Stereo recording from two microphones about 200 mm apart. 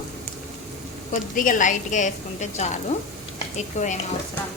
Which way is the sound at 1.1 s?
40° left (ahead or behind).